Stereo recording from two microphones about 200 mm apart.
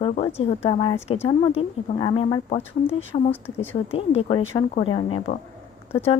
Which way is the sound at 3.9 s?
30° left (ahead or behind).